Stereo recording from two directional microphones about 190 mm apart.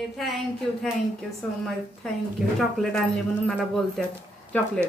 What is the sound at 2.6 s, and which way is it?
Speech, centre (ahead or behind).